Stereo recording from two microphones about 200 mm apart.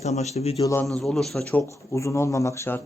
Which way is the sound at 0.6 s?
10° left (ahead or behind).